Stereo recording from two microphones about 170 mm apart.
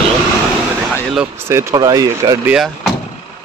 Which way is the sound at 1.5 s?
15° right (ahead or behind).